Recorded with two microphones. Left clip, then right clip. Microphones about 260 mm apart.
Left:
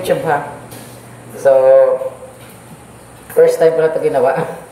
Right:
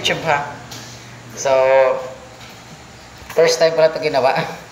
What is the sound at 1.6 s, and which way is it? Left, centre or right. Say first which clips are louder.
Speech: left 4 dB; centre.